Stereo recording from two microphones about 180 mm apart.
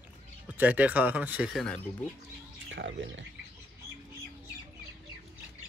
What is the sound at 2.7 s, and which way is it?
Speech, 90° right.